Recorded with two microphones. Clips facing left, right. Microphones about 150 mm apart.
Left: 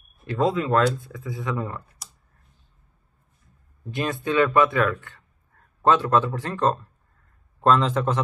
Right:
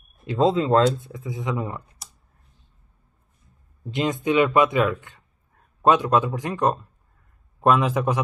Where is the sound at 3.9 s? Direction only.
20° right (ahead or behind).